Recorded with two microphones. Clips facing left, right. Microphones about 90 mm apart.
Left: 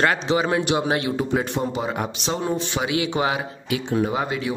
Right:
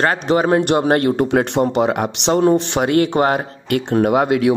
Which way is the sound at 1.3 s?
65° right (ahead or behind).